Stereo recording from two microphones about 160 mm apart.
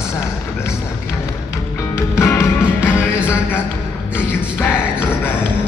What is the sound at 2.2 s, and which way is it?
Music, 15° left (ahead or behind).